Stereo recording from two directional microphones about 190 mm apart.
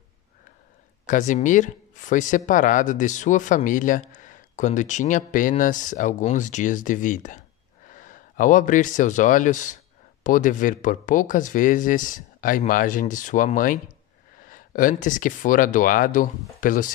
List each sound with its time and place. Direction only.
1.0 s speech: 40° left (ahead or behind)